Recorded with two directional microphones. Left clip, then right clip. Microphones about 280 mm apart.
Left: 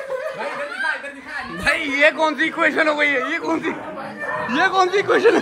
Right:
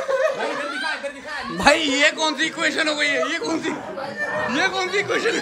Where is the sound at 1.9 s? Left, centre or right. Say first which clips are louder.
Left 3 dB; centre.